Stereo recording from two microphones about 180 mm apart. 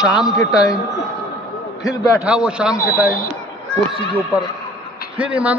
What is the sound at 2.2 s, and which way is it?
Speech, 5° right (ahead or behind).